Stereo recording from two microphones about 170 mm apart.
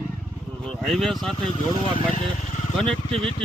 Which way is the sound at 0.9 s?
Centre (ahead or behind).